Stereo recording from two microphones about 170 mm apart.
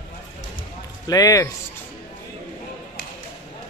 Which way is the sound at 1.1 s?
20° left (ahead or behind).